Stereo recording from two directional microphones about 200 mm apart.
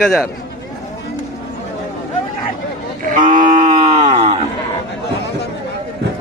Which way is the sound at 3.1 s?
40° right (ahead or behind).